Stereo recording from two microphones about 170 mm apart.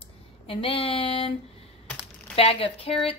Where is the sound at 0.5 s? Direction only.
35° left (ahead or behind).